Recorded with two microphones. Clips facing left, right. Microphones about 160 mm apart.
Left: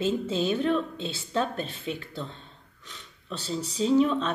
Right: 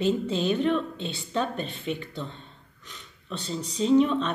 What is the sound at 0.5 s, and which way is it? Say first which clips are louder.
A woman's voice: right 1 dB; 5° left (ahead or behind).